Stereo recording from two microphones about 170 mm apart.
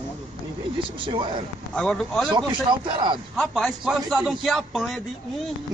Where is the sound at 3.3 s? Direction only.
Centre (ahead or behind).